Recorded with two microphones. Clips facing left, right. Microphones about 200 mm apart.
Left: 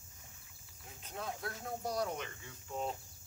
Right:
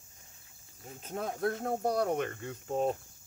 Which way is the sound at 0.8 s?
45° right (ahead or behind).